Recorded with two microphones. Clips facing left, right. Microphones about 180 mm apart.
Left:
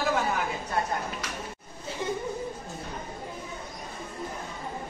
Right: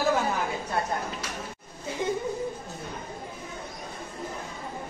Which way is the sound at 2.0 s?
15° right (ahead or behind).